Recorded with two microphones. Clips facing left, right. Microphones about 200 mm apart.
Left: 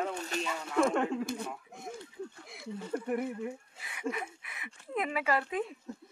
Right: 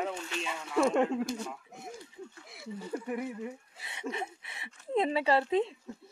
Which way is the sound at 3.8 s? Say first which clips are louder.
Even; 25° right (ahead or behind).